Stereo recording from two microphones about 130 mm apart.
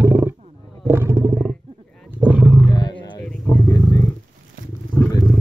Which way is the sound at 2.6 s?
35° left (ahead or behind).